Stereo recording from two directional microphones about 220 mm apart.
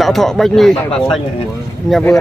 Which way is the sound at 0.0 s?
Centre (ahead or behind).